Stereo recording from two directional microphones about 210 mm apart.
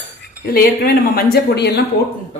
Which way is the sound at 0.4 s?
45° left (ahead or behind).